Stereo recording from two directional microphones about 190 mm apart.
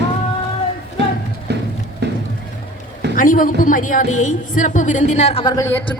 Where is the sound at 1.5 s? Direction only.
60° right (ahead or behind).